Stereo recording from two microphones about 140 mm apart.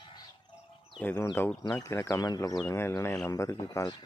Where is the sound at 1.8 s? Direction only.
20° left (ahead or behind).